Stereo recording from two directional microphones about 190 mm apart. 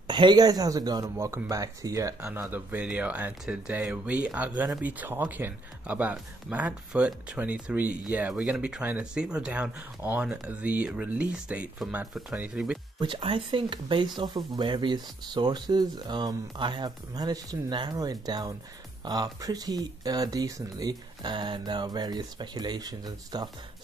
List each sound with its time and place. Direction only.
0.1 s speech: 25° right (ahead or behind); by 12.7 s 5° right (ahead or behind)
13.0 s speech: 25° right (ahead or behind)